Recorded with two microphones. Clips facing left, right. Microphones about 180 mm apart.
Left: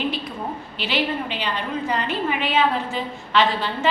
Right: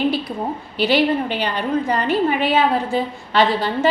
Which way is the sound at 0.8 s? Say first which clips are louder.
Right 8 dB; 40° right (ahead or behind).